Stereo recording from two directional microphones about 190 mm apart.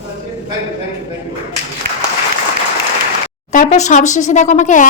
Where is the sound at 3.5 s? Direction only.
40° left (ahead or behind).